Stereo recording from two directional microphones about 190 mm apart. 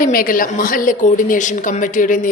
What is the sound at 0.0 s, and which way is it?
A woman's voice, 45° left (ahead or behind).